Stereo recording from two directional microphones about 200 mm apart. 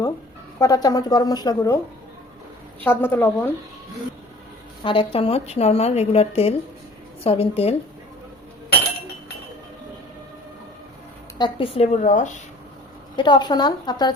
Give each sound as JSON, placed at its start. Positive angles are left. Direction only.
{"t": 0.6, "sound": "a woman's voice", "side_deg": 20}
{"t": 2.8, "sound": "a woman's voice", "side_deg": 10}
{"t": 4.8, "sound": "a woman's voice", "side_deg": 25}
{"t": 11.3, "sound": "a woman's voice", "side_deg": 25}
{"t": 13.1, "sound": "a woman's voice", "side_deg": 20}